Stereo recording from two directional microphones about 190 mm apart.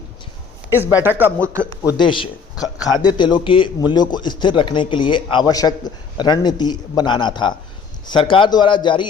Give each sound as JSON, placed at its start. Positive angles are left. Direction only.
{"t": 0.8, "sound": "speech", "side_deg": -10}
{"t": 2.0, "sound": "a man's voice", "side_deg": 25}